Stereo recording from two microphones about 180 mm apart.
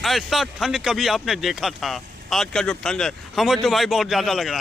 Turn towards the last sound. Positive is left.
turn(degrees=0)  # may be behind; listen again after turning